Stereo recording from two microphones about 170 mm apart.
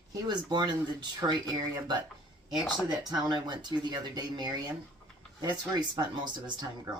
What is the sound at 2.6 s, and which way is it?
Speech, centre (ahead or behind).